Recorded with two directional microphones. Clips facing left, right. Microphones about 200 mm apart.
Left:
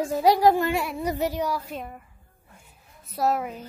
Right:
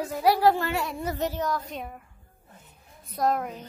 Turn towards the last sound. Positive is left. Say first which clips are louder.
# left 1 dB
turn(degrees=5)  # may be behind; listen again after turning